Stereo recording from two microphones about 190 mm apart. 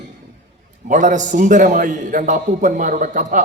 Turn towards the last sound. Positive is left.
turn(degrees=-40)  # may be behind; listen again after turning